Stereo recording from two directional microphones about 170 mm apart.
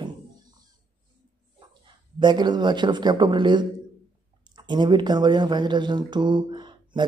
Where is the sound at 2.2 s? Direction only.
25° right (ahead or behind).